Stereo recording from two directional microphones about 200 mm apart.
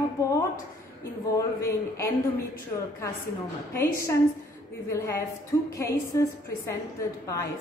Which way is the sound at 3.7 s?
15° left (ahead or behind).